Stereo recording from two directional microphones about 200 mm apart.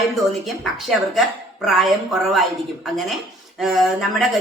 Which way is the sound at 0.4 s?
Centre (ahead or behind).